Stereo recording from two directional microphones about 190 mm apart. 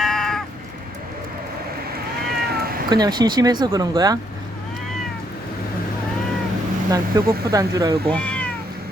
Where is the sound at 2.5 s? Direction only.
55° right (ahead or behind).